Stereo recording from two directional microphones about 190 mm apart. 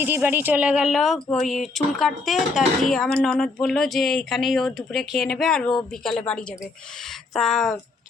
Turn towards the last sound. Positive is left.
turn(degrees=0)  # may be behind; listen again after turning